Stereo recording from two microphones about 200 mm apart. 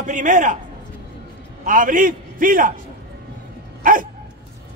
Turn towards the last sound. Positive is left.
turn(degrees=-45)  # may be behind; listen again after turning